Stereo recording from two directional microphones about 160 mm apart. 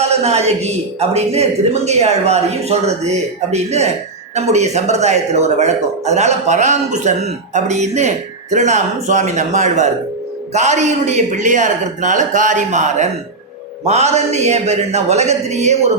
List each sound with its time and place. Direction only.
0.0 s speech: 40° right (ahead or behind)